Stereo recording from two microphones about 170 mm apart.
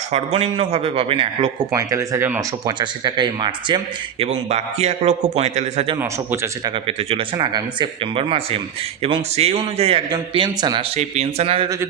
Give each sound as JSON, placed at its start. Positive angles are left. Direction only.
{"t": 0.1, "sound": "a man's voice", "side_deg": -40}
{"t": 1.7, "sound": "speech", "side_deg": -15}
{"t": 2.6, "sound": "speech", "side_deg": -25}
{"t": 4.2, "sound": "a man's voice", "side_deg": -40}
{"t": 6.0, "sound": "speech", "side_deg": -15}
{"t": 6.8, "sound": "a man's voice", "side_deg": -30}
{"t": 10.9, "sound": "a man's voice", "side_deg": -40}